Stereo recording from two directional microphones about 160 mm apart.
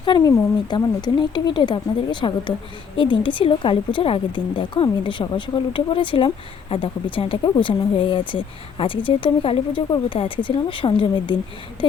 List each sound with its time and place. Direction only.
0.0 s a woman's voice: 25° left (ahead or behind)